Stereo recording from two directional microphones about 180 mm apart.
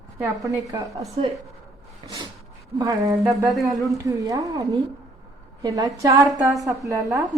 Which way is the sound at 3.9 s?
20° right (ahead or behind).